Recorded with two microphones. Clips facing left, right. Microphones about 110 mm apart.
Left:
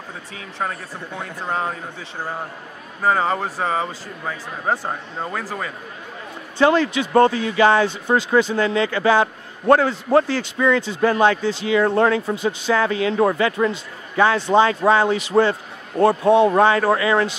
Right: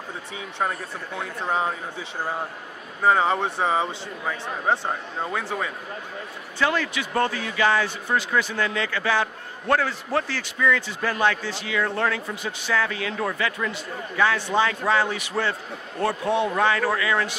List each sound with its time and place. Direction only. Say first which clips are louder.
0.4 s speech: even; centre (ahead or behind)
3.0 s speech: left 1 dB; centre (ahead or behind)
6.6 s a man's voice: left 8 dB; 30° left (ahead or behind)
16.4 s speech: left 7 dB; 35° left (ahead or behind)